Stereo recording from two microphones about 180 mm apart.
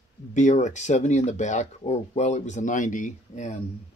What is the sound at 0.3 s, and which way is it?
Speech, 45° left (ahead or behind).